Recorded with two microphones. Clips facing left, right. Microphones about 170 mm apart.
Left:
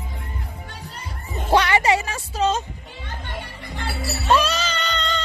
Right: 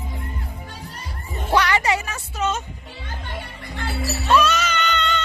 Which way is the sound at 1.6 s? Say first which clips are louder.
Left 2 dB; 20° left (ahead or behind).